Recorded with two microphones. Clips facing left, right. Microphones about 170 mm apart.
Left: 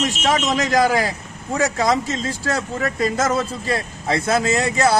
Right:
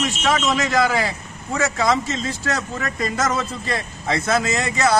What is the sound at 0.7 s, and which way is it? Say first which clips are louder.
Speech: left 4 dB; 40° left (ahead or behind).